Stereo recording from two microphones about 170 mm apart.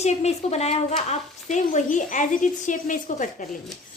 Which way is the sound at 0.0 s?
40° left (ahead or behind).